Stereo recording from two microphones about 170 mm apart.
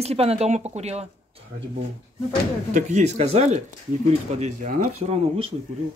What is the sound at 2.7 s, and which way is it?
Speech, 40° right (ahead or behind).